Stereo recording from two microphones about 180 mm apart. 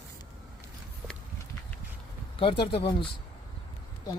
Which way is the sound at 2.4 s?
30° left (ahead or behind).